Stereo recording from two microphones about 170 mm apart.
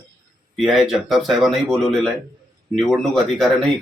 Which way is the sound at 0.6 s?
Centre (ahead or behind).